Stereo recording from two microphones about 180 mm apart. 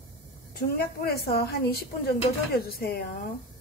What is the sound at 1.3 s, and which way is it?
Speech, 60° left (ahead or behind).